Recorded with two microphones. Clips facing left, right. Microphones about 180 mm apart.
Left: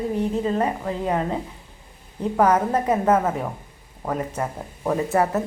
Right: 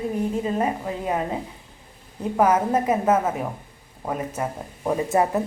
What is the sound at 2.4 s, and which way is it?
Speech, 10° right (ahead or behind).